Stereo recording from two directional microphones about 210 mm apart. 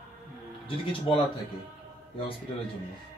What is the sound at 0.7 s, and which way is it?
Speech, 25° left (ahead or behind).